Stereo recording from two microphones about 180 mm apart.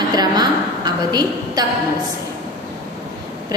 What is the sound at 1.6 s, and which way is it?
Speech, 20° right (ahead or behind).